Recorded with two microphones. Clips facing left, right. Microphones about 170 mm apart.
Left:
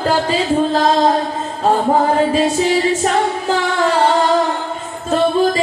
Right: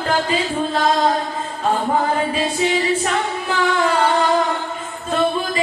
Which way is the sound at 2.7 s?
40° left (ahead or behind).